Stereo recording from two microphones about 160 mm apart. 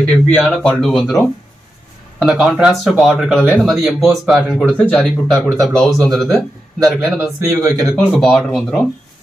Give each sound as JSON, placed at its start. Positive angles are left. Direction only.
{"t": 0.0, "sound": "speech", "side_deg": 5}
{"t": 7.3, "sound": "speech", "side_deg": -20}
{"t": 7.8, "sound": "speech", "side_deg": 0}